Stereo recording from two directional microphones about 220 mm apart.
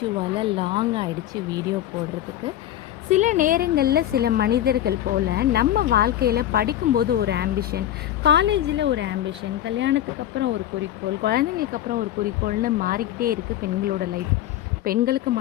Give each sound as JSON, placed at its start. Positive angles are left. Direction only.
{"t": 0.3, "sound": "speech", "side_deg": -25}
{"t": 3.1, "sound": "a woman's voice", "side_deg": -35}